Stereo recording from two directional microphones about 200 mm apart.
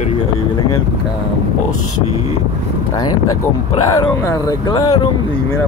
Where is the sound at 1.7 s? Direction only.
90° left.